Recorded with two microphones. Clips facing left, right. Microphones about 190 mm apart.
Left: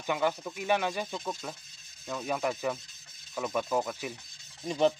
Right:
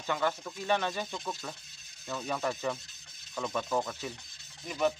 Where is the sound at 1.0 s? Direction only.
Centre (ahead or behind).